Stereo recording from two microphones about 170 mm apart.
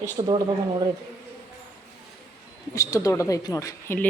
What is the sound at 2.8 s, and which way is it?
A woman's voice, 20° left (ahead or behind).